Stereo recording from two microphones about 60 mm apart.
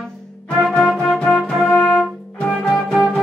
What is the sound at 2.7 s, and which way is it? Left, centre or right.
Music, centre.